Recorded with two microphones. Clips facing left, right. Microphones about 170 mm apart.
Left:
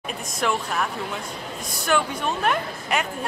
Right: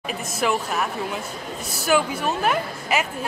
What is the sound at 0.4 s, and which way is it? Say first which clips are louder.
A woman's voice: right 1 dB; 5° right (ahead or behind).